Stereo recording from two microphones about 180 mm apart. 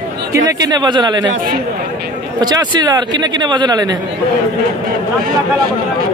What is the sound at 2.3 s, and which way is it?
Speech, 25° right (ahead or behind).